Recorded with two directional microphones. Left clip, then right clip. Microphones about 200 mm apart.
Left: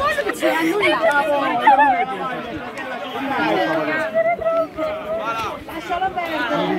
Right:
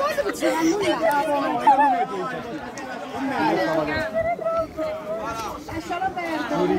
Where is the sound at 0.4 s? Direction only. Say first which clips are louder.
Left 4 dB; 20° right (ahead or behind).